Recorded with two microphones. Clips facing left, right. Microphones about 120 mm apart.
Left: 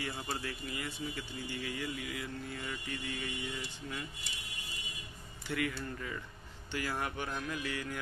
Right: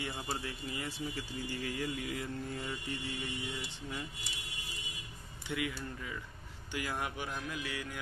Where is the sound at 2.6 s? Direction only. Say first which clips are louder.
Right 1 dB; 25° right (ahead or behind).